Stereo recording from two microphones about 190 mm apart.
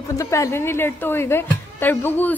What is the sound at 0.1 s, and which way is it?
A woman's voice, 15° left (ahead or behind).